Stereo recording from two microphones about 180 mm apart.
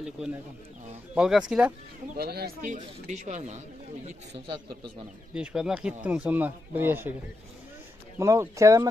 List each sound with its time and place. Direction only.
0.0 s speech: 5° right (ahead or behind)
2.1 s speech: 60° right (ahead or behind); by 4.1 s 40° right (ahead or behind)
4.5 s speech: 25° right (ahead or behind)
5.3 s speech: 5° right (ahead or behind)
8.2 s speech: 15° right (ahead or behind)